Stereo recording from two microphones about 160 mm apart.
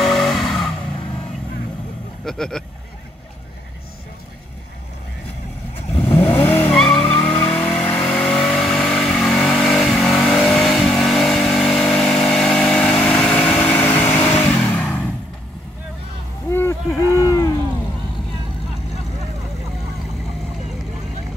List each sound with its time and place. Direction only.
0.0 s vehicle: centre (ahead or behind)
2.2 s speech: 5° left (ahead or behind)
5.9 s vehicle: 10° left (ahead or behind)
16.5 s a sound: 15° left (ahead or behind)